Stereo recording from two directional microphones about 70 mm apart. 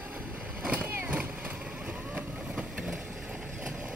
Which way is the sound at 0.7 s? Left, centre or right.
Right.